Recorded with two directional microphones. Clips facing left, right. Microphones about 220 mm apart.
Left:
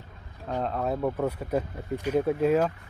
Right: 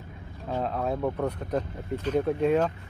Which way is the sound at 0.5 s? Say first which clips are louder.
Even; centre (ahead or behind).